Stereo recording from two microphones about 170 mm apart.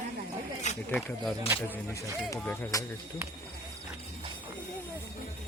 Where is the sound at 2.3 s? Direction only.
20° left (ahead or behind).